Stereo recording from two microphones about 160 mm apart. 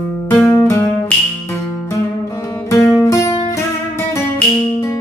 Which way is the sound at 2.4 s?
15° left (ahead or behind).